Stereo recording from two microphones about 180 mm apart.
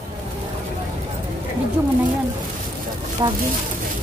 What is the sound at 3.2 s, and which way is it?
Speech, 25° right (ahead or behind).